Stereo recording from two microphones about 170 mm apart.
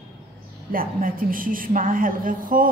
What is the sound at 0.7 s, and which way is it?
A woman's voice, 55° right (ahead or behind).